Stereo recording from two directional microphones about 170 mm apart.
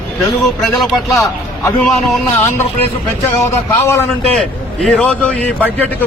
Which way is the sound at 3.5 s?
15° left (ahead or behind).